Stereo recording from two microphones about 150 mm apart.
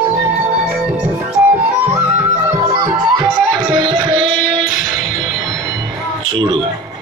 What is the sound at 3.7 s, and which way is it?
Music, 30° right (ahead or behind).